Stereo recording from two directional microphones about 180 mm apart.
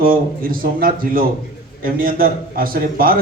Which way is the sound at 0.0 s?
50° right (ahead or behind).